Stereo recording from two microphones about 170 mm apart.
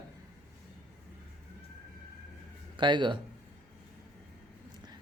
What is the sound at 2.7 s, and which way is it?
Speech, 25° right (ahead or behind).